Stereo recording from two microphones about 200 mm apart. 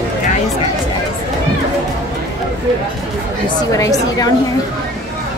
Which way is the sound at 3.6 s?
15° left (ahead or behind).